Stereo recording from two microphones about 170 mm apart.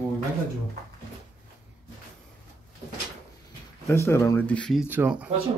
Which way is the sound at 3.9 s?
15° left (ahead or behind).